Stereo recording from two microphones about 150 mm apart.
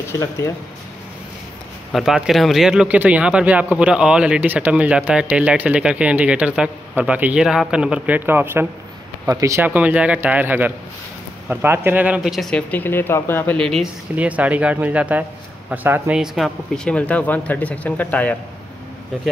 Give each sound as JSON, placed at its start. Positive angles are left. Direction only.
{"t": 1.9, "sound": "a man's voice", "side_deg": 0}
{"t": 9.7, "sound": "a man's voice", "side_deg": -10}
{"t": 13.6, "sound": "speech", "side_deg": 0}
{"t": 14.1, "sound": "a man's voice", "side_deg": -10}